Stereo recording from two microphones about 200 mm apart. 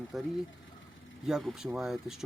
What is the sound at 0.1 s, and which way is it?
Speech, centre (ahead or behind).